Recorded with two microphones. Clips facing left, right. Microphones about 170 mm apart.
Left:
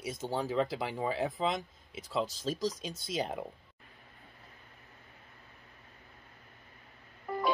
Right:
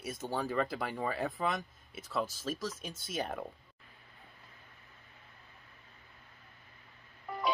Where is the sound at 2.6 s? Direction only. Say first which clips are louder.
Left 5 dB; 35° left (ahead or behind).